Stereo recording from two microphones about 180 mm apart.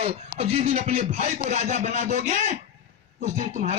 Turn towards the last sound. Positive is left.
turn(degrees=-40)  # may be behind; listen again after turning